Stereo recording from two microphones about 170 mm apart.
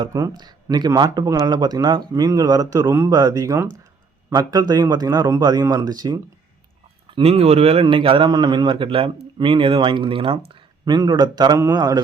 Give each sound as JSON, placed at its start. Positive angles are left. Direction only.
{"t": 0.0, "sound": "speech", "side_deg": -20}
{"t": 7.2, "sound": "a man's voice", "side_deg": -35}